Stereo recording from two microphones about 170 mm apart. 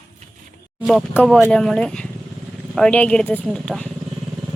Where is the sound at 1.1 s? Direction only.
Centre (ahead or behind).